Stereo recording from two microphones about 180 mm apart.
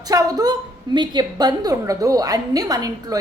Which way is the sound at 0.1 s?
20° right (ahead or behind).